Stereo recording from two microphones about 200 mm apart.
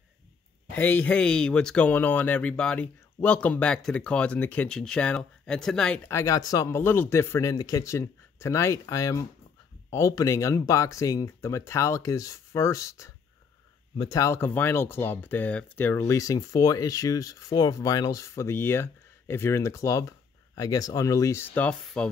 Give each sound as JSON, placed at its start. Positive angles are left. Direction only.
{"t": 0.7, "sound": "speech", "side_deg": 10}